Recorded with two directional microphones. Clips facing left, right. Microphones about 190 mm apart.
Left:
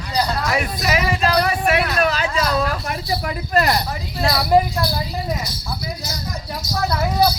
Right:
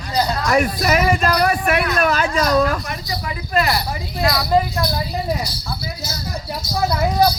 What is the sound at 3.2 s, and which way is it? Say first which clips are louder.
Cricket: even; 45° left (ahead or behind).